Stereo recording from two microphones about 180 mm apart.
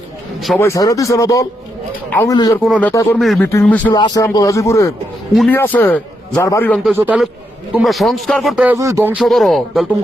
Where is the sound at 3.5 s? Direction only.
10° left (ahead or behind).